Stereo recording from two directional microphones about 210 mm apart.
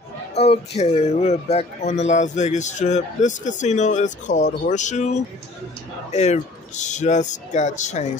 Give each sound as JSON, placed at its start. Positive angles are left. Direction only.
{"t": 0.3, "sound": "speech", "side_deg": 30}